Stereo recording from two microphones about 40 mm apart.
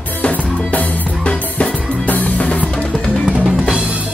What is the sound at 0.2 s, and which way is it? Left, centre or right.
Music, left.